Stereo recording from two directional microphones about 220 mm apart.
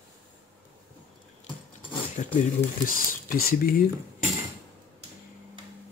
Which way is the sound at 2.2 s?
35° left (ahead or behind).